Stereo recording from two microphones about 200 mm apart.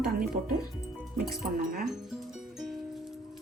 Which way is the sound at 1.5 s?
45° right (ahead or behind).